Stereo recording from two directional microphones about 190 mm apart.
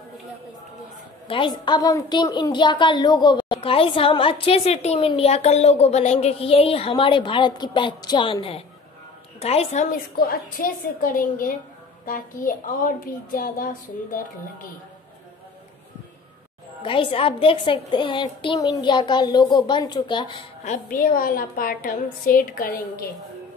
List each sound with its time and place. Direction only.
1.2 s a woman's voice: 25° left (ahead or behind)
10.1 s a woman's voice: 50° left (ahead or behind)
16.8 s a woman's voice: 25° left (ahead or behind)
20.6 s a woman's voice: 45° left (ahead or behind)